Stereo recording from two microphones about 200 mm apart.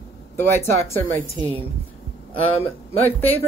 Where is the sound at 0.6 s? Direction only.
10° left (ahead or behind).